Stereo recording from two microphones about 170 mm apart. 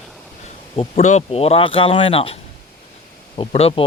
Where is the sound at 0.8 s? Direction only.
40° left (ahead or behind).